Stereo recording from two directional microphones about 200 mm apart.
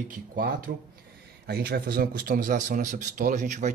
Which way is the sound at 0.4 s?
45° right (ahead or behind).